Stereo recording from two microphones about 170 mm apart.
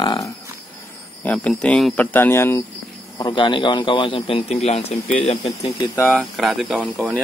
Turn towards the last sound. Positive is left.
turn(degrees=0)  # may be behind; listen again after turning